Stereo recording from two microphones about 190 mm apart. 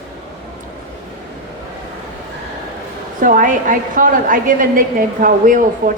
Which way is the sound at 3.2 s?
45° right (ahead or behind).